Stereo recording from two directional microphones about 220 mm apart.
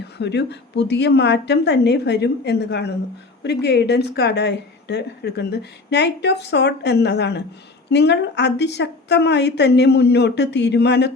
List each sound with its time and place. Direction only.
0.0 s a woman's voice: 50° left (ahead or behind)